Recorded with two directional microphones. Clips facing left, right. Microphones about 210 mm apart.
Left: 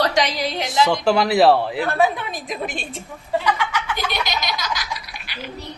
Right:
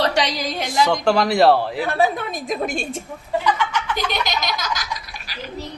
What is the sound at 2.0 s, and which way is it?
A woman's voice, 45° right (ahead or behind).